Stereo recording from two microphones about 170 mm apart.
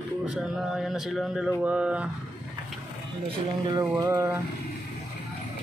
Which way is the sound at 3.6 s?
25° right (ahead or behind).